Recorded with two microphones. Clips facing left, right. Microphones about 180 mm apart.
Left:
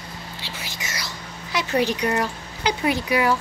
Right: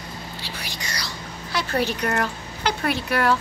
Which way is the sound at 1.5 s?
15° left (ahead or behind).